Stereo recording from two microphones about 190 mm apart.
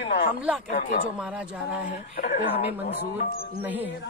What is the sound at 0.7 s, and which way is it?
Speech, 45° left (ahead or behind).